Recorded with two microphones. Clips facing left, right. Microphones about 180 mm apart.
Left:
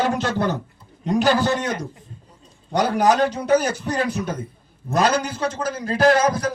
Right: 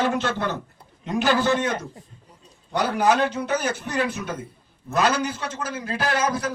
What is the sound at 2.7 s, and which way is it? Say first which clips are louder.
A man's voice: left 3 dB; 40° left (ahead or behind).